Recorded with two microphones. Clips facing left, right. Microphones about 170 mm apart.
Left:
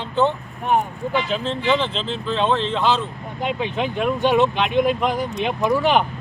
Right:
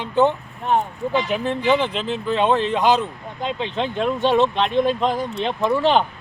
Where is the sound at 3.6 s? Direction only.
15° left (ahead or behind).